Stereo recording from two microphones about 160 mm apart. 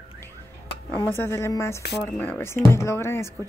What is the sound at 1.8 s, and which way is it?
Speech, 90° left.